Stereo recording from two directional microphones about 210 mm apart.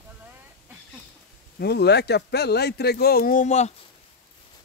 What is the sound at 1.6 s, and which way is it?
A man's voice, 50° left (ahead or behind).